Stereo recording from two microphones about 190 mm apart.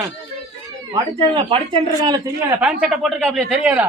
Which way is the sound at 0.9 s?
25° right (ahead or behind).